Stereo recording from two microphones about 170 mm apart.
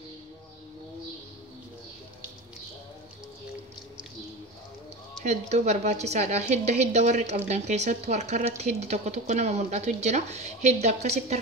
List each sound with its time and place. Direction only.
5.2 s a woman's voice: 40° right (ahead or behind)